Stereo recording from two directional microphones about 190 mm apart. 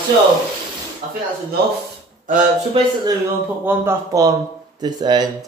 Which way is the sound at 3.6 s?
15° right (ahead or behind).